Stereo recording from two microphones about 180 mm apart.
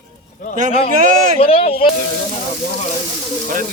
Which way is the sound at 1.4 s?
30° left (ahead or behind).